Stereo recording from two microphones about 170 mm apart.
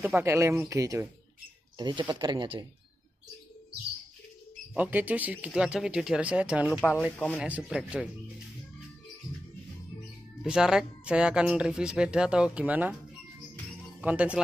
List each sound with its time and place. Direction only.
0.0 s speech: 15° right (ahead or behind)
4.7 s speech: 10° right (ahead or behind)
7.2 s speech: 10° left (ahead or behind)
7.4 s speech: 5° right (ahead or behind)
10.4 s speech: 5° right (ahead or behind)
14.0 s speech: 5° right (ahead or behind)